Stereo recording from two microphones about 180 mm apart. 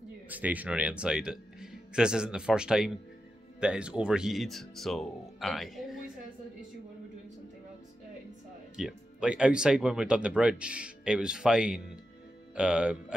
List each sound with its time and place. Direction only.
0.3 s speech: 10° right (ahead or behind)
8.7 s speech: 5° right (ahead or behind)